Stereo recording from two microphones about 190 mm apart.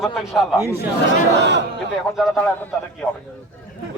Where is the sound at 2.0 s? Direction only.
Centre (ahead or behind).